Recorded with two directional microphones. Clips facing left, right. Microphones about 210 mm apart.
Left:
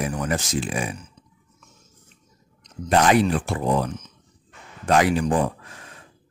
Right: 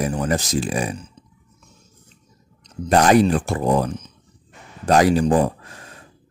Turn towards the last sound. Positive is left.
turn(degrees=-40)  # may be behind; listen again after turning